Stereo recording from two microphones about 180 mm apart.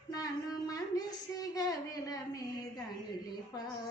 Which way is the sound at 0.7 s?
20° left (ahead or behind).